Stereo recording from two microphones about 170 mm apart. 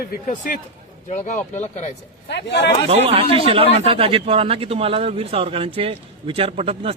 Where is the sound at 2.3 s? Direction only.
90° left.